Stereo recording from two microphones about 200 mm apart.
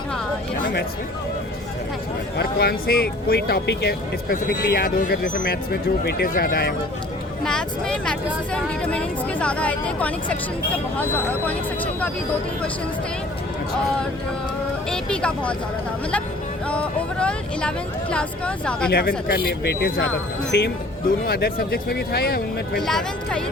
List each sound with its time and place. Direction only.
0.6 s a sound: 55° left (ahead or behind)
2.4 s speech: 50° left (ahead or behind)
7.4 s speech: 5° left (ahead or behind)
14.8 s speech: 5° left (ahead or behind)
16.6 s speech: 5° left (ahead or behind)
18.9 s speech: 50° left (ahead or behind)
22.9 s speech: centre (ahead or behind)